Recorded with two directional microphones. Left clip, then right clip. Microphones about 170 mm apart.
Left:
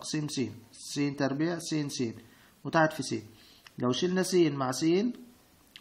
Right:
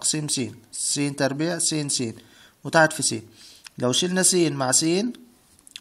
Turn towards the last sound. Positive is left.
turn(degrees=-40)  # may be behind; listen again after turning